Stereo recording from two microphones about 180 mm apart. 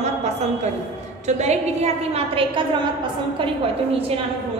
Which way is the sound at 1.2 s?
40° right (ahead or behind).